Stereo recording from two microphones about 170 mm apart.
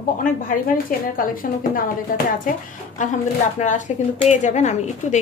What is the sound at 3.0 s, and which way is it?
Speech, 50° left (ahead or behind).